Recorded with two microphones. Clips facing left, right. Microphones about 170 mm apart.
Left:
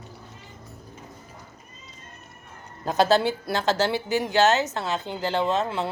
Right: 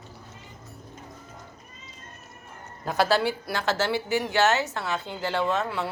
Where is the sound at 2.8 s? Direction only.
20° left (ahead or behind).